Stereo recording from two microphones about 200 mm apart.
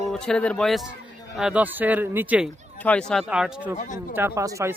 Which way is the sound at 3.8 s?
40° left (ahead or behind).